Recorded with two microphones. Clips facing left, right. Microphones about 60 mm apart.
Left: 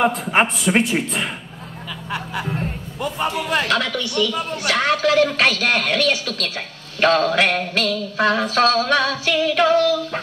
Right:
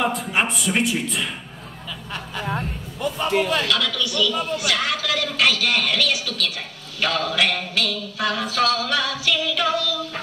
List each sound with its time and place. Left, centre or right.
0.0 s speech: left
2.0 s a sound: centre
3.0 s a man's voice: left